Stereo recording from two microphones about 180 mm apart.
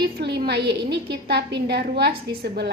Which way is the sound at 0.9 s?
65° right (ahead or behind).